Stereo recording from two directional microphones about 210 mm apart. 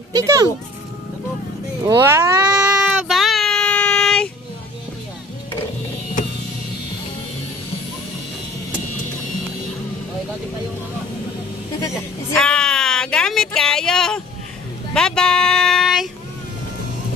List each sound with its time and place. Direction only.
0.1 s speech: 15° right (ahead or behind)
1.8 s child singing: 15° right (ahead or behind); by 4.3 s 5° left (ahead or behind)
12.3 s a sound: 5° left (ahead or behind)
15.0 s music: 5° left (ahead or behind)